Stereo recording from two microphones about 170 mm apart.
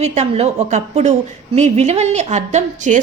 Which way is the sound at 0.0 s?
40° right (ahead or behind).